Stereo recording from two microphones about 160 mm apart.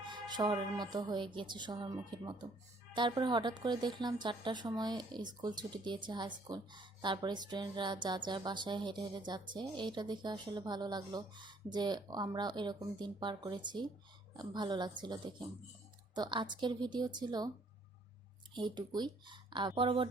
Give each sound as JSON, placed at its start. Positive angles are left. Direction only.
{"t": 0.1, "sound": "speech", "side_deg": -25}
{"t": 18.5, "sound": "speech", "side_deg": -30}